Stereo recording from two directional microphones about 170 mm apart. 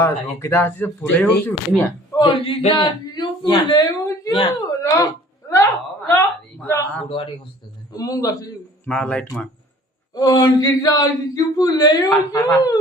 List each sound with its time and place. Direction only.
0.0 s speech: 15° left (ahead or behind)
2.1 s a woman's voice: 30° left (ahead or behind)
8.9 s speech: 5° left (ahead or behind)
10.2 s speech: 25° left (ahead or behind)